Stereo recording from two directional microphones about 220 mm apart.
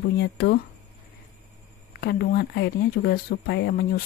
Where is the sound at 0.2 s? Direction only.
50° left (ahead or behind).